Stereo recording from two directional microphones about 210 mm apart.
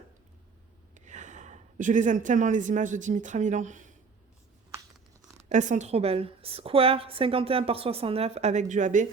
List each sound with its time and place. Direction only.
0.9 s speech: 35° right (ahead or behind)
5.5 s a woman's voice: 35° right (ahead or behind)